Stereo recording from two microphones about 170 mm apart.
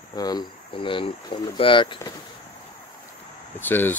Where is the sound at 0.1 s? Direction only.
20° left (ahead or behind).